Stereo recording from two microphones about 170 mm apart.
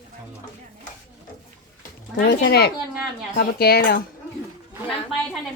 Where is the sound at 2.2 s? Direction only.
70° left (ahead or behind).